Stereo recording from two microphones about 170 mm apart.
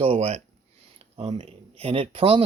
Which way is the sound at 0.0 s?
35° right (ahead or behind).